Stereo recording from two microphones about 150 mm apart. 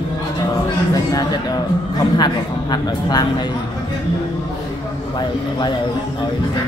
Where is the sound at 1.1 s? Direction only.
25° left (ahead or behind).